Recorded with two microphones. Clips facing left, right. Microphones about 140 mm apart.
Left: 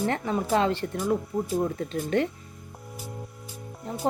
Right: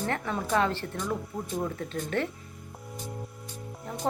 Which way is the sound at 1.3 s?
Centre (ahead or behind).